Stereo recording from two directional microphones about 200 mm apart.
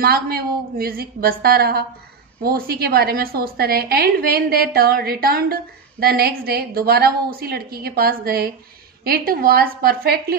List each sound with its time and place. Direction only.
0.0 s a woman's voice: 50° right (ahead or behind)